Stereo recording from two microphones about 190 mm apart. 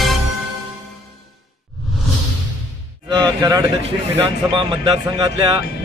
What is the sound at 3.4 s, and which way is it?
A man's voice, 15° right (ahead or behind).